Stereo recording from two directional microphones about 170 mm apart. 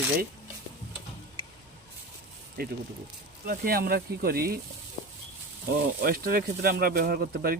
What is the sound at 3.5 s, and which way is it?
Speech, 60° right (ahead or behind).